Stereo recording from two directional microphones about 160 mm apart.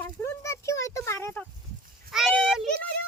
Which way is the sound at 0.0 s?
15° left (ahead or behind).